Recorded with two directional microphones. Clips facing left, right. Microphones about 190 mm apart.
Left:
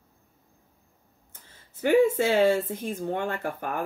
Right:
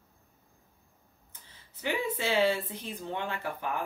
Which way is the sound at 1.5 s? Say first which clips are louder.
Left 12 dB; 50° left (ahead or behind).